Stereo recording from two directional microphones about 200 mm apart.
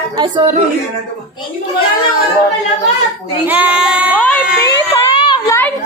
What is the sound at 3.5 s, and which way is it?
Speech, 5° right (ahead or behind).